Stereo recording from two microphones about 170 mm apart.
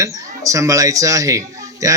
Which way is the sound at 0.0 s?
20° right (ahead or behind).